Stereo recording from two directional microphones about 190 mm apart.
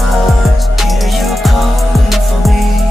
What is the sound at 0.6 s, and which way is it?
Music, centre (ahead or behind).